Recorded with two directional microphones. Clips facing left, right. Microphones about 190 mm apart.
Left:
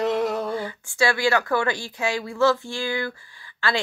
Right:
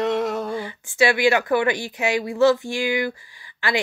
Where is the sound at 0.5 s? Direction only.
20° right (ahead or behind).